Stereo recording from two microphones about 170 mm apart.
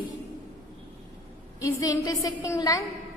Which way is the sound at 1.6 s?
20° left (ahead or behind).